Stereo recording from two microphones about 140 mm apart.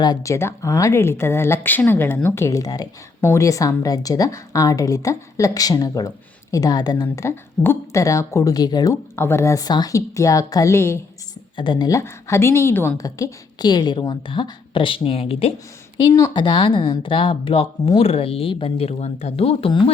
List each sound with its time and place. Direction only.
0.0 s a woman's voice: 25° left (ahead or behind)
11.5 s a woman's voice: 35° left (ahead or behind)
16.0 s a woman's voice: 20° left (ahead or behind)
16.3 s a woman's voice: 35° left (ahead or behind)